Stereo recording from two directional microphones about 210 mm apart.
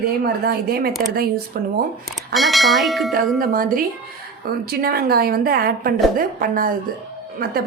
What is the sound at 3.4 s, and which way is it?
Speech, 45° right (ahead or behind).